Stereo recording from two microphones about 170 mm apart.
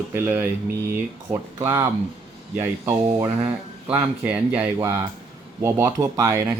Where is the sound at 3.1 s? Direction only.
10° right (ahead or behind).